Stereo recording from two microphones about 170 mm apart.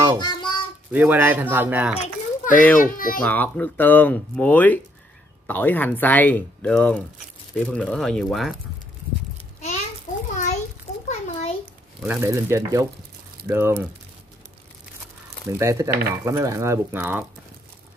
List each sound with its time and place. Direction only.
0.2 s a sound: 25° left (ahead or behind)
0.9 s speech: 10° right (ahead or behind)
2.0 s a child's voice: 50° left (ahead or behind)
3.3 s speech: 10° left (ahead or behind)
11.1 s a sound: 40° left (ahead or behind)
12.2 s speech: 15° right (ahead or behind)
15.4 s speech: 15° right (ahead or behind)